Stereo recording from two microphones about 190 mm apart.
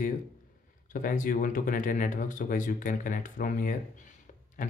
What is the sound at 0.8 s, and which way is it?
Speech, 45° left (ahead or behind).